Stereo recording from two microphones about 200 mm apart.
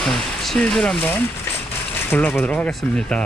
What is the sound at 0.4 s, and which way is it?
Speech, centre (ahead or behind).